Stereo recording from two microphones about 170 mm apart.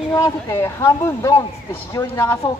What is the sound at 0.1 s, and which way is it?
Speech, 20° left (ahead or behind).